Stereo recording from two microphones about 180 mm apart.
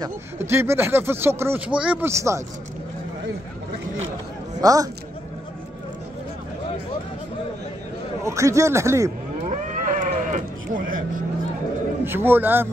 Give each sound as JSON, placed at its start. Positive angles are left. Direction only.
{"t": 0.0, "sound": "speech", "side_deg": -15}
{"t": 4.6, "sound": "speech", "side_deg": -20}
{"t": 8.2, "sound": "speech", "side_deg": -15}
{"t": 9.4, "sound": "livestock", "side_deg": -40}
{"t": 12.0, "sound": "speech", "side_deg": -10}